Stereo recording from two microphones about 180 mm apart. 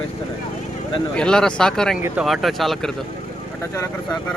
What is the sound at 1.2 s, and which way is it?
Speech, 5° left (ahead or behind).